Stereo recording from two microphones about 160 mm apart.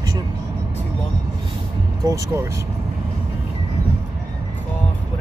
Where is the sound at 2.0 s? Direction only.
20° right (ahead or behind).